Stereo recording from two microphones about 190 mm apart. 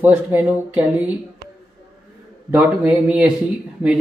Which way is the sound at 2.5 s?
5° right (ahead or behind).